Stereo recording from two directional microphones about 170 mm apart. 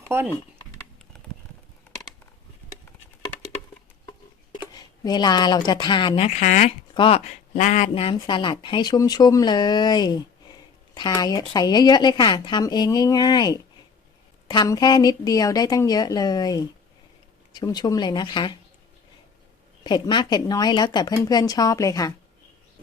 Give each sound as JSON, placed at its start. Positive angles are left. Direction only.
{"t": 0.1, "sound": "speech", "side_deg": -15}
{"t": 4.5, "sound": "speech", "side_deg": 25}
{"t": 6.9, "sound": "speech", "side_deg": 30}
{"t": 7.5, "sound": "speech", "side_deg": 45}
{"t": 19.8, "sound": "speech", "side_deg": 25}